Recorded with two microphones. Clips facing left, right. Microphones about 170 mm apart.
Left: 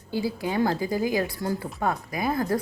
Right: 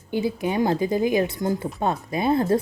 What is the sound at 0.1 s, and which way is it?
A woman's voice, 20° right (ahead or behind).